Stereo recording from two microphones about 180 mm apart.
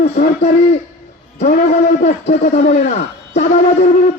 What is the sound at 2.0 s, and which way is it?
Speech, 45° left (ahead or behind).